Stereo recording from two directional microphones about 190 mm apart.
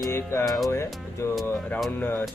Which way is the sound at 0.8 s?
Centre (ahead or behind).